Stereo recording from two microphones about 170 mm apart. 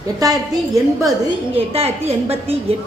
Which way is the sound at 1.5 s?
35° right (ahead or behind).